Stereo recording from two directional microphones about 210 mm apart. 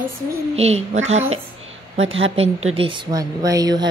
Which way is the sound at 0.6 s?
30° right (ahead or behind).